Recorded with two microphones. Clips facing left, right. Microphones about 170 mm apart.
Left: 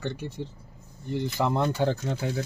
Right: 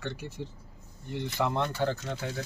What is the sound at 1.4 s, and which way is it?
Speech, 40° left (ahead or behind).